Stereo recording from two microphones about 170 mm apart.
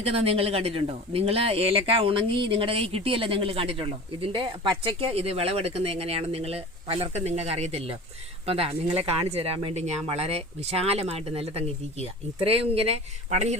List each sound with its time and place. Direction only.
0.0 s speech: 35° right (ahead or behind)